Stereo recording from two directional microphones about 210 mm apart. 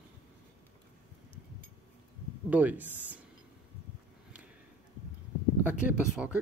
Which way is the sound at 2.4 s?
10° right (ahead or behind).